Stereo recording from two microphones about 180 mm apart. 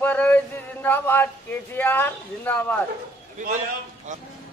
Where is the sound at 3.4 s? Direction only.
45° right (ahead or behind).